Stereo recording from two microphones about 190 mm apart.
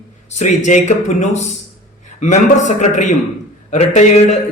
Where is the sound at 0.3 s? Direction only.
40° left (ahead or behind).